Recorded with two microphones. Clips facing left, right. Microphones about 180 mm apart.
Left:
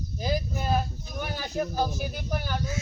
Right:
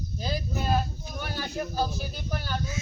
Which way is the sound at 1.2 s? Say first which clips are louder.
Left 3 dB; 15° left (ahead or behind).